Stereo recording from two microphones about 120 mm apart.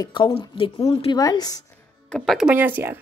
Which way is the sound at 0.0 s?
40° left (ahead or behind).